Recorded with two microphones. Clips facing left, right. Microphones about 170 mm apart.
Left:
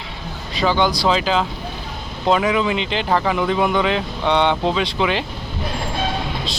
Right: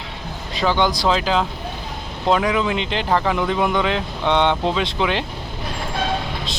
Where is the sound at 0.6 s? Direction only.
10° left (ahead or behind).